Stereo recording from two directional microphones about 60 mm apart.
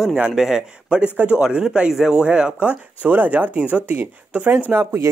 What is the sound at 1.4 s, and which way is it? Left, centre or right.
Speech, centre.